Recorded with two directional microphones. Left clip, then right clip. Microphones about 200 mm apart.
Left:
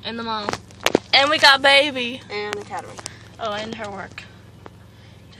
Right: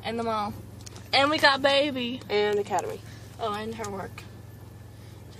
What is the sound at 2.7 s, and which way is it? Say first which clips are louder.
Speech: right 3 dB; 60° right (ahead or behind).